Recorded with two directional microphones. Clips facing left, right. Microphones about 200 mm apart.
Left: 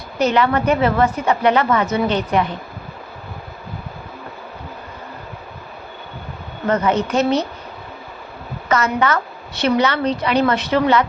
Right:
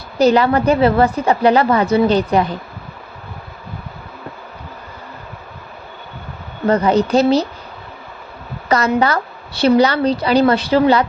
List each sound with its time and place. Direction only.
0.2 s a woman's voice: 35° right (ahead or behind)
6.7 s a woman's voice: 35° right (ahead or behind)
8.7 s a woman's voice: 35° right (ahead or behind)